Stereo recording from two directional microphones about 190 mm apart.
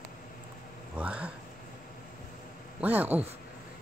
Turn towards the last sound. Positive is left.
turn(degrees=-10)  # may be behind; listen again after turning